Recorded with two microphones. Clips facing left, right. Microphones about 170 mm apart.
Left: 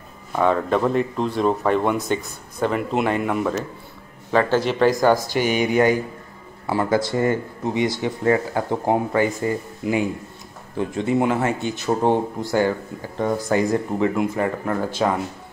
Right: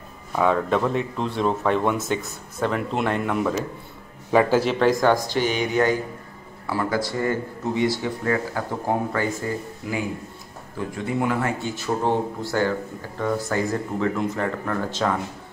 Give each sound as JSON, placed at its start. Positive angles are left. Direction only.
{"t": 0.4, "sound": "speech", "side_deg": 0}
{"t": 4.3, "sound": "speech", "side_deg": -10}
{"t": 6.7, "sound": "speech", "side_deg": 25}